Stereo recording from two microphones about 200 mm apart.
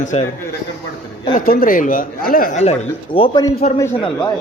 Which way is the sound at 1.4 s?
45° left (ahead or behind).